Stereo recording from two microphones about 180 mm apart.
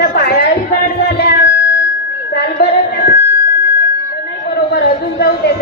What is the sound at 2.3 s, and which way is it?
Speech, 65° left (ahead or behind).